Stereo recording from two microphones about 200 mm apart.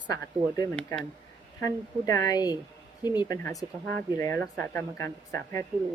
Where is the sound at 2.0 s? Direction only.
15° left (ahead or behind).